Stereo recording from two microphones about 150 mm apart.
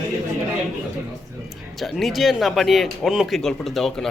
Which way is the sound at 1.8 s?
Centre (ahead or behind).